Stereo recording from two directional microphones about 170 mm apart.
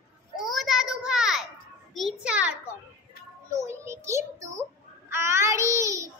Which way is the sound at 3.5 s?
15° right (ahead or behind).